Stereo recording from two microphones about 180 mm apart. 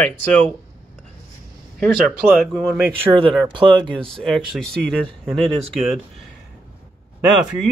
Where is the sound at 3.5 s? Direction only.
25° right (ahead or behind).